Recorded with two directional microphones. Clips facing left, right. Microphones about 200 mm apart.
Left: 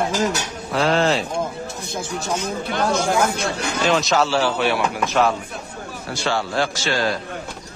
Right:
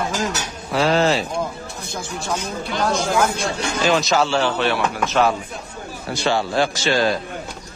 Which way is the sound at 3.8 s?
Centre (ahead or behind).